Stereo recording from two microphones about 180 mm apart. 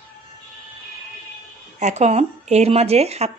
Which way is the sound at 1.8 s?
40° right (ahead or behind).